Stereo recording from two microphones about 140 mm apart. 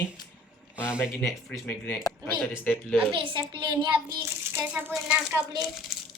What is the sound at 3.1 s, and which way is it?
Speech, 35° right (ahead or behind).